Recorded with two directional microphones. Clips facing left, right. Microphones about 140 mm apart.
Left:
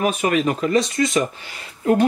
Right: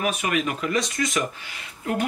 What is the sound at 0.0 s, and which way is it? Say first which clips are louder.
Speech: left 6 dB; 35° left (ahead or behind).